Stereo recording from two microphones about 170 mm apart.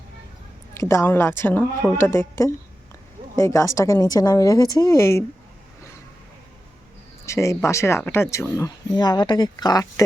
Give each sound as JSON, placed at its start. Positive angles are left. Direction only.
{"t": 0.7, "sound": "a woman's voice", "side_deg": 15}
{"t": 7.3, "sound": "speech", "side_deg": 15}